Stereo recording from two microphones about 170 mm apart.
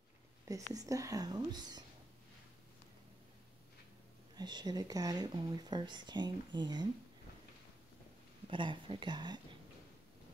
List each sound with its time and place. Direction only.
0.7 s speech: 20° right (ahead or behind)
4.4 s speech: 25° right (ahead or behind)
8.5 s speech: 30° right (ahead or behind)